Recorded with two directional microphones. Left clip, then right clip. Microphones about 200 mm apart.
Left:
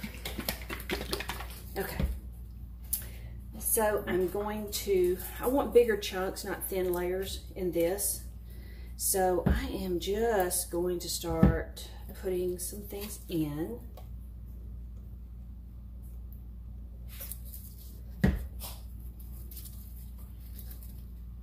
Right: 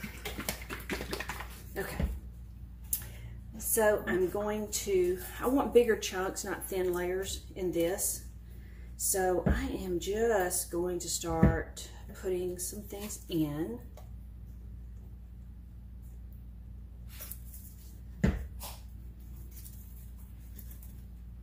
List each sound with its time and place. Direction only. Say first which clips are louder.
0.5 s typing: left 4 dB; 5° left (ahead or behind)
1.7 s speech: left 2 dB; 5° right (ahead or behind)
3.7 s speech: right 1 dB; 20° right (ahead or behind)
9.1 s speech: left 2 dB; 10° right (ahead or behind)